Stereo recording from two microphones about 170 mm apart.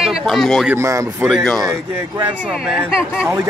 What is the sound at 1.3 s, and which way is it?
A woman's voice, centre (ahead or behind).